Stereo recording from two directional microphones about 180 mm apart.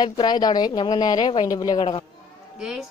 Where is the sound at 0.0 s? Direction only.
25° left (ahead or behind).